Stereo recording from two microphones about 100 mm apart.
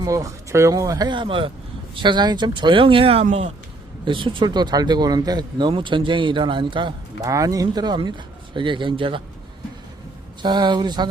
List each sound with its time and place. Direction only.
0.0 s speech: 35° right (ahead or behind); by 3.5 s 85° right
4.0 s speech: 55° right (ahead or behind)
7.3 s speech: 35° right (ahead or behind); by 9.2 s 60° right (ahead or behind)
10.4 s speech: 45° right (ahead or behind)